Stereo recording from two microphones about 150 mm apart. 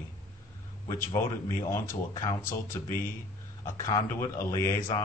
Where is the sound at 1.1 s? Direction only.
20° left (ahead or behind).